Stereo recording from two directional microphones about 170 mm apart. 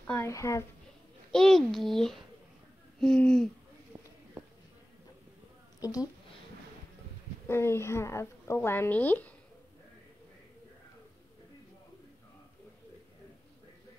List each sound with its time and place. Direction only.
0.0 s a woman's voice: 10° left (ahead or behind)
1.3 s a child's voice: 5° left (ahead or behind)
5.8 s a woman's voice: 20° left (ahead or behind)
7.4 s a woman's voice: 15° left (ahead or behind)